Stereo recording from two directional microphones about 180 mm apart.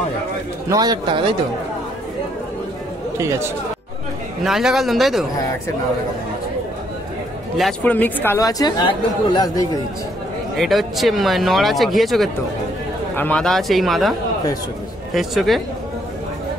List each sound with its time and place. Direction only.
0.7 s speech: 20° right (ahead or behind)
3.2 s speech: 15° right (ahead or behind)
4.4 s speech: centre (ahead or behind)
7.5 s speech: 5° left (ahead or behind); by 9.7 s 20° left (ahead or behind)
10.6 s speech: centre (ahead or behind)
15.1 s speech: centre (ahead or behind)